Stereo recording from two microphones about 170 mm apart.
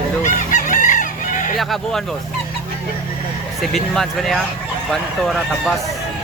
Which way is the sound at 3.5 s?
Centre (ahead or behind).